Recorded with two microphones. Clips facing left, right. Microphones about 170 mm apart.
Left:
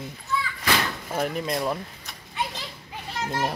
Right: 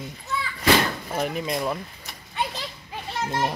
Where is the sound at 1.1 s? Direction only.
Centre (ahead or behind).